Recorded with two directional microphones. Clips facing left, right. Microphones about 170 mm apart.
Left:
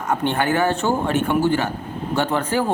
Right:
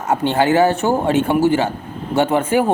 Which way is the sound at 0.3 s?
25° right (ahead or behind).